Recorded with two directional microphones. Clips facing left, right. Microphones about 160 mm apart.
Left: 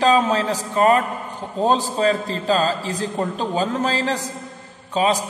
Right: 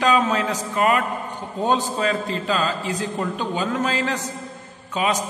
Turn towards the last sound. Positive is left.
turn(degrees=30)  # may be behind; listen again after turning